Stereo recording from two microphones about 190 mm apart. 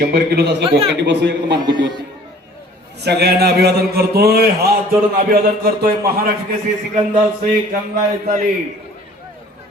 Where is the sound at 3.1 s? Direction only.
60° right (ahead or behind).